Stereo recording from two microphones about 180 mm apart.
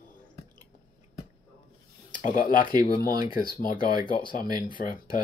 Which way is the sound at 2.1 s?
50° left (ahead or behind).